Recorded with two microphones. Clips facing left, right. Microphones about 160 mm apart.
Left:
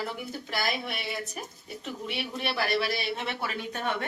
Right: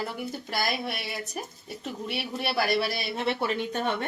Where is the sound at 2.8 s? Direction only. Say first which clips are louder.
Right 2 dB; 35° right (ahead or behind).